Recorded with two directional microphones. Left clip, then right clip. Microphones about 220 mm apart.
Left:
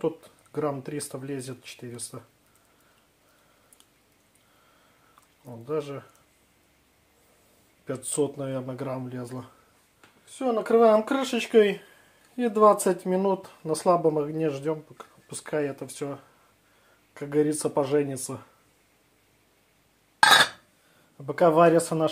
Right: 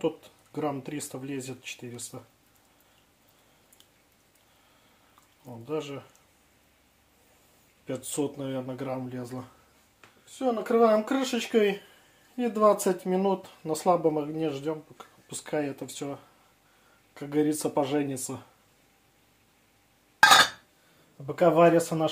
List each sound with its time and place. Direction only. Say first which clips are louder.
0.0 s speech: left 1 dB; 20° left (ahead or behind)
5.7 s speech: left 3 dB; 15° left (ahead or behind)
8.1 s speech: left 5 dB; 20° left (ahead or behind)
10.4 s speech: left 3 dB; 35° left (ahead or behind)
15.2 s speech: left 2 dB; 15° left (ahead or behind)
21.3 s speech: left 2 dB; 35° left (ahead or behind)